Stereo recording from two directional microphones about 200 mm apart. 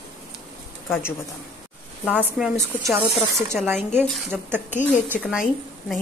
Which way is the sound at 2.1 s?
5° right (ahead or behind).